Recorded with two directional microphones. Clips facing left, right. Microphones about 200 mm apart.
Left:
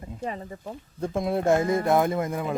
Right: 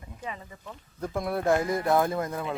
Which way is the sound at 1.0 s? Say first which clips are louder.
Left 3 dB; 25° left (ahead or behind).